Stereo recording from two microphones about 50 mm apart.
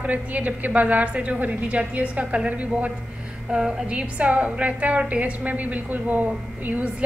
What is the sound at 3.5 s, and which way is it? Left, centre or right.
A woman's voice, centre.